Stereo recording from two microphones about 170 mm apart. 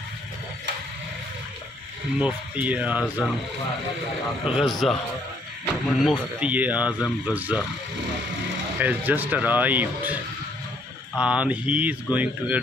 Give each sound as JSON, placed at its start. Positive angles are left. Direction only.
{"t": 2.1, "sound": "speech", "side_deg": -10}
{"t": 4.5, "sound": "a man's voice", "side_deg": 0}
{"t": 8.7, "sound": "speech", "side_deg": -10}
{"t": 11.1, "sound": "speech", "side_deg": -5}